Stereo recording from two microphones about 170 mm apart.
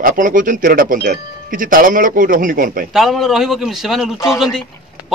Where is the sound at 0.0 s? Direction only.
50° right (ahead or behind).